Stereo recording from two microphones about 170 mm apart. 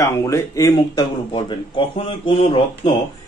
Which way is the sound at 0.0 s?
20° left (ahead or behind).